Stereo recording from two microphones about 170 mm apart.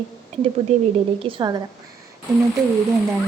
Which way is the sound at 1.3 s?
25° right (ahead or behind).